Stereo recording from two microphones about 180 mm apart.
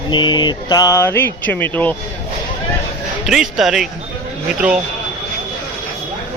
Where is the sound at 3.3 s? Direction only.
Centre (ahead or behind).